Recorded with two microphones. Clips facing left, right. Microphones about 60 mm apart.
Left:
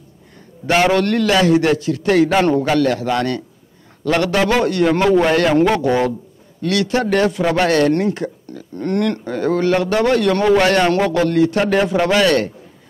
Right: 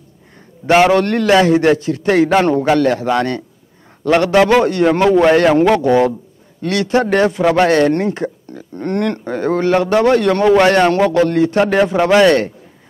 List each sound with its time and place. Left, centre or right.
0.7 s a man's voice: right